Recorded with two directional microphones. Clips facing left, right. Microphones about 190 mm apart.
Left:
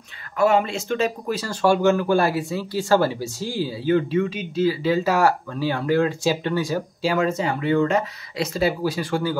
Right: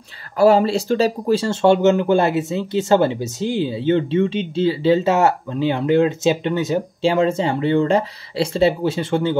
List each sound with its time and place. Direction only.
0.4 s speech: 35° right (ahead or behind)